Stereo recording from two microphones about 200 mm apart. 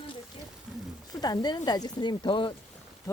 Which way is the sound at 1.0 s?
20° left (ahead or behind).